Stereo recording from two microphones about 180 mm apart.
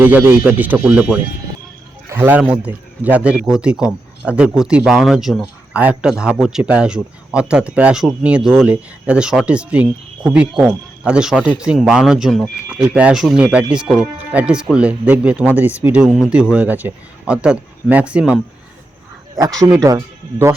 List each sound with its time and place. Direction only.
0.0 s a man's voice: 10° right (ahead or behind)
19.4 s speech: 20° right (ahead or behind)